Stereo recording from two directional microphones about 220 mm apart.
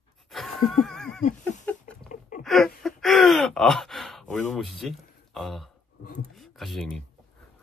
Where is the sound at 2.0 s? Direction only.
35° left (ahead or behind).